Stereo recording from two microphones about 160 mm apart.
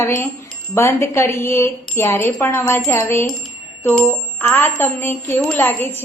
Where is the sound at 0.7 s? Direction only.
15° left (ahead or behind).